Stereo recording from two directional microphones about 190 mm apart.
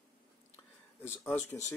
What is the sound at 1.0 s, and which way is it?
Speech, 10° left (ahead or behind).